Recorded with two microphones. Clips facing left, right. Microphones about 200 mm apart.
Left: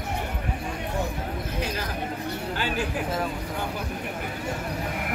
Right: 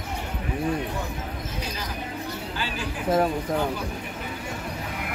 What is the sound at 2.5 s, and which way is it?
Speech, 55° left (ahead or behind).